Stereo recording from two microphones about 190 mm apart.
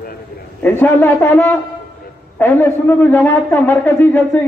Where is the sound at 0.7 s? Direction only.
10° left (ahead or behind).